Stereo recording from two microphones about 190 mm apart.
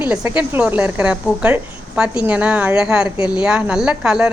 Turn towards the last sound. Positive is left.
turn(degrees=-5)  # may be behind; listen again after turning